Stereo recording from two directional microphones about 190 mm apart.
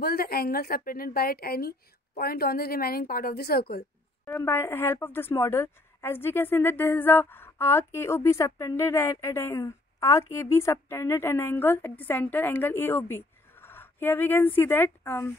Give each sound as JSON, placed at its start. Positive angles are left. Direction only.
{"t": 0.0, "sound": "speech", "side_deg": 55}
{"t": 4.3, "sound": "a woman's voice", "side_deg": 15}